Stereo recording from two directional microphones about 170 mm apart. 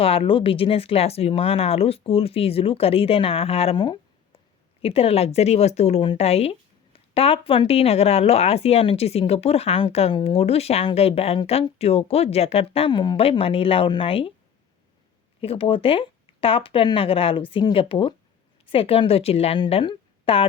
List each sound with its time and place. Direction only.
0.0 s speech: 35° left (ahead or behind)
15.4 s a woman's voice: 35° left (ahead or behind)